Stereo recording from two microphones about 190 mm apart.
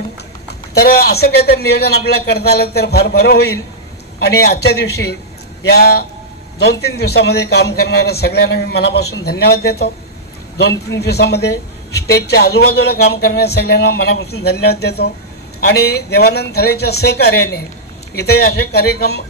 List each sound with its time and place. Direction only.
0.7 s a man's voice: 55° left (ahead or behind)
11.0 s a man's voice: 60° left (ahead or behind)